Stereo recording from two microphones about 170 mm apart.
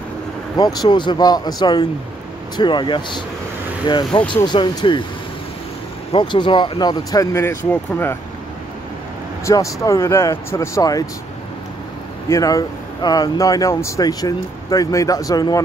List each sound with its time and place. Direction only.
0.6 s speech: 25° left (ahead or behind)
6.1 s speech: 30° left (ahead or behind)
9.4 s speech: 20° left (ahead or behind)
12.3 s speech: 20° left (ahead or behind)